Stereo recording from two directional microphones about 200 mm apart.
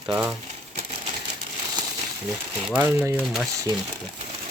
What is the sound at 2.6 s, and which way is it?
Speech, 10° right (ahead or behind).